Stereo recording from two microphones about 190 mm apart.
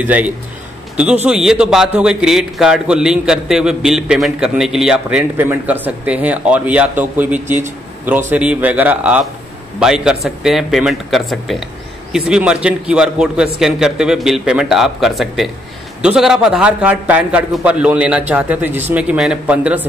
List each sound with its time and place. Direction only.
0.0 s a man's voice: 10° right (ahead or behind)